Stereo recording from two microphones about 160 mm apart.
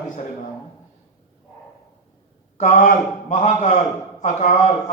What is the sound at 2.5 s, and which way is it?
A man's voice, 50° left (ahead or behind).